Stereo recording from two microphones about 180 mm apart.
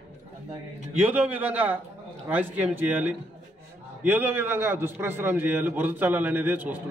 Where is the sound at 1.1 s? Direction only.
10° right (ahead or behind).